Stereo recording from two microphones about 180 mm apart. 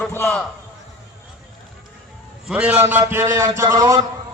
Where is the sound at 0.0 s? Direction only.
10° left (ahead or behind).